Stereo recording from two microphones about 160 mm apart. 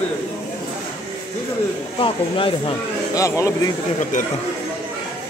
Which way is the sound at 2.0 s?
30° left (ahead or behind).